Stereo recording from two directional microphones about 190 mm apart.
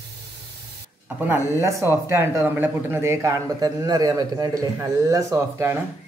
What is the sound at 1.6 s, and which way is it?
Speech, 15° right (ahead or behind).